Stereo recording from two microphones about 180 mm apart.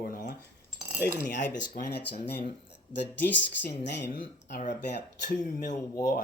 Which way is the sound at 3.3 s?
80° left.